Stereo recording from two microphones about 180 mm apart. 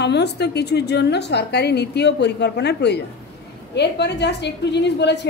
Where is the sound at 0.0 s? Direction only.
70° left (ahead or behind).